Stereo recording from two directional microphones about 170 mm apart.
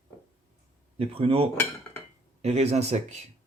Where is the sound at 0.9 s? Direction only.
35° right (ahead or behind).